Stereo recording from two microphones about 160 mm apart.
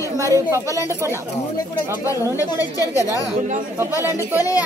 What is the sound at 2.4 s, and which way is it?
A woman's voice, 20° left (ahead or behind).